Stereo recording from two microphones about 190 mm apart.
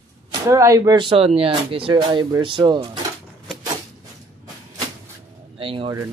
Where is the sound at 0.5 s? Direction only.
15° right (ahead or behind).